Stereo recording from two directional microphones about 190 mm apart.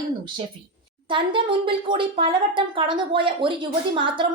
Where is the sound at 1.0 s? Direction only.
25° right (ahead or behind).